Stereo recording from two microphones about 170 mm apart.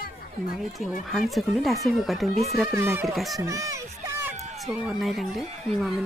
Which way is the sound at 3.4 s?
20° right (ahead or behind).